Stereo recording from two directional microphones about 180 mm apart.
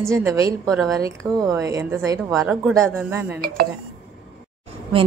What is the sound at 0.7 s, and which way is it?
Speech, centre (ahead or behind).